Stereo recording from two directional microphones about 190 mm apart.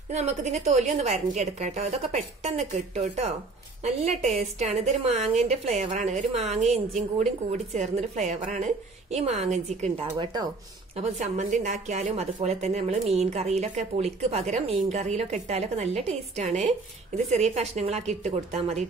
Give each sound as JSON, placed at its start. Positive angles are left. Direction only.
{"t": 0.1, "sound": "a woman's voice", "side_deg": -35}
{"t": 10.1, "sound": "speech", "side_deg": -20}
{"t": 11.0, "sound": "a woman's voice", "side_deg": -40}